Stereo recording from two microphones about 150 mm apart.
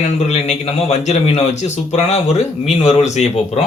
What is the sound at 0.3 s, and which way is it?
A man's voice, 50° left (ahead or behind).